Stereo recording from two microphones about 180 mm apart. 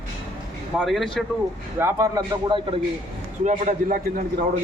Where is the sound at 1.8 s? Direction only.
20° right (ahead or behind).